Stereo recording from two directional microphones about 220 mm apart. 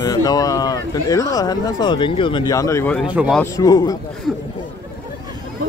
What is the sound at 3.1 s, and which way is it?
Speech, 5° right (ahead or behind).